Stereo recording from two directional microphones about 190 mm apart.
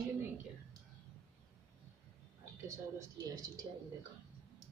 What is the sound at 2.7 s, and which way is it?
Speech, 15° right (ahead or behind).